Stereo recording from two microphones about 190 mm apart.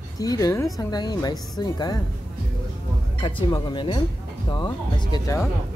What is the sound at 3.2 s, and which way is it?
Speech, 25° left (ahead or behind).